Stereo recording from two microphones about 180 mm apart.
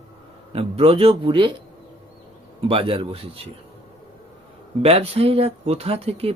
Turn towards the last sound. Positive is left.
turn(degrees=-35)  # may be behind; listen again after turning